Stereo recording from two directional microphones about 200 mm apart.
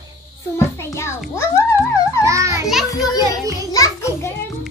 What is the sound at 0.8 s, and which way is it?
Music, 15° left (ahead or behind).